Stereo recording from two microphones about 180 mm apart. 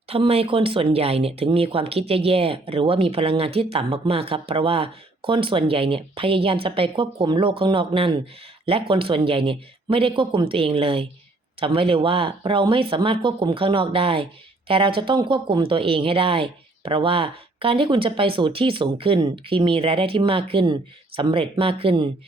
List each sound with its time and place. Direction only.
0.1 s speech: 35° right (ahead or behind)